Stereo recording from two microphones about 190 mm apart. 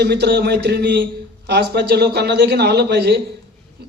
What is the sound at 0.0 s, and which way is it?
A man's voice, 55° right (ahead or behind).